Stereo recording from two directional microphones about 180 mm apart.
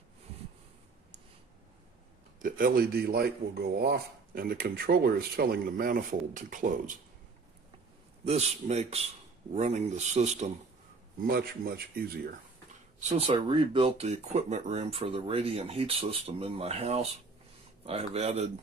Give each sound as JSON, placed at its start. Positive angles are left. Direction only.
{"t": 2.4, "sound": "speech", "side_deg": -50}
{"t": 8.2, "sound": "speech", "side_deg": -35}
{"t": 11.1, "sound": "speech", "side_deg": -55}
{"t": 13.3, "sound": "speech", "side_deg": -30}